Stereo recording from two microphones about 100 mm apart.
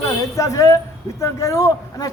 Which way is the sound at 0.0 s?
35° left (ahead or behind).